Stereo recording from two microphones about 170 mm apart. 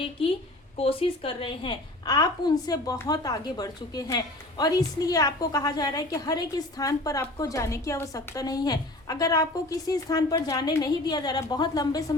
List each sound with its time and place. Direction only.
0.8 s a woman's voice: 35° left (ahead or behind)